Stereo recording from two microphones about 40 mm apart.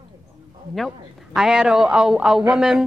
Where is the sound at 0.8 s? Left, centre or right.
Centre.